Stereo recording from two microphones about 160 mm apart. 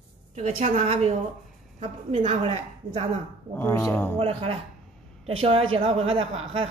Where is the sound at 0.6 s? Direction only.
55° right (ahead or behind).